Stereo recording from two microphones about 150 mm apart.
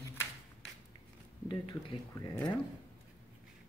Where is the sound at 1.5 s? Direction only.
30° left (ahead or behind).